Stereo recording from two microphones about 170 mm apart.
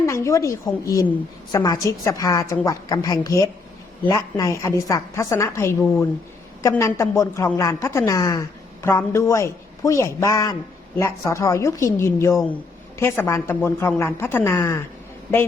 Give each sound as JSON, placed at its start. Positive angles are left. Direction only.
{"t": 0.0, "sound": "a woman's voice", "side_deg": 15}